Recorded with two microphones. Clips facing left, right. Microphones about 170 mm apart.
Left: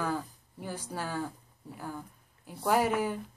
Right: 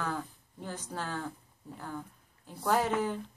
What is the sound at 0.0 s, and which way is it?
Speech, 10° left (ahead or behind).